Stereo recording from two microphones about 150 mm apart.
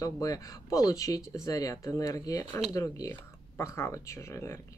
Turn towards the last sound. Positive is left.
turn(degrees=15)  # may be behind; listen again after turning